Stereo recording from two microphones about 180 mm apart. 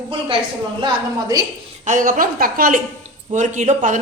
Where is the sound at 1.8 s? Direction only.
45° right (ahead or behind).